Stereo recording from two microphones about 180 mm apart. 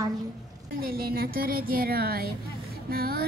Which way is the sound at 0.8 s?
55° right (ahead or behind).